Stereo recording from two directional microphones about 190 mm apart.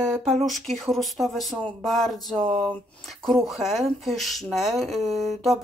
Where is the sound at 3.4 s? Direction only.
Centre (ahead or behind).